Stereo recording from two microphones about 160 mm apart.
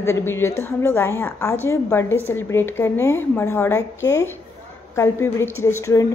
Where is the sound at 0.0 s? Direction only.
15° left (ahead or behind).